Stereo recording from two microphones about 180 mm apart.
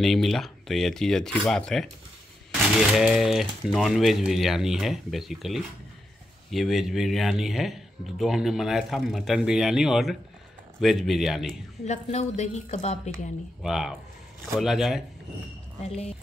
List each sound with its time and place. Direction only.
0.0 s speech: centre (ahead or behind)
2.9 s speech: centre (ahead or behind)
11.8 s a woman's voice: 40° left (ahead or behind)
13.6 s speech: centre (ahead or behind)
15.8 s a woman's voice: 35° left (ahead or behind)